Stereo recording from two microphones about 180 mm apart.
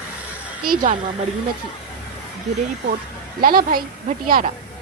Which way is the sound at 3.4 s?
55° right (ahead or behind).